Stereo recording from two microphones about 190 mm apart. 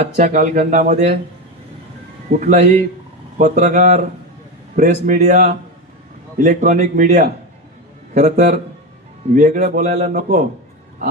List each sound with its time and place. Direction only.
0.0 s speech: 40° right (ahead or behind)
2.4 s speech: 35° right (ahead or behind)